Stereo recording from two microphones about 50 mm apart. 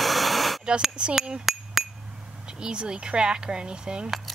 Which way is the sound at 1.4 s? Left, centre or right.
Centre.